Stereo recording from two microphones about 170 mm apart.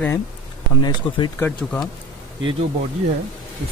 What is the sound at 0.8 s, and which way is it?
Speech, 25° left (ahead or behind).